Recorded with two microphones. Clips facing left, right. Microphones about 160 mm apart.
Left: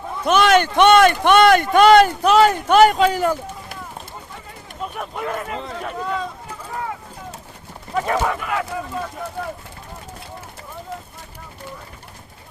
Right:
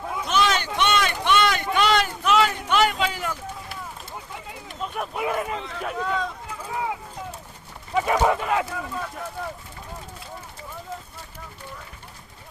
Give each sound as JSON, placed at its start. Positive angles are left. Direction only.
{"t": 0.3, "sound": "a sound", "side_deg": 60}
{"t": 4.9, "sound": "speech", "side_deg": -5}
{"t": 7.9, "sound": "speech", "side_deg": -10}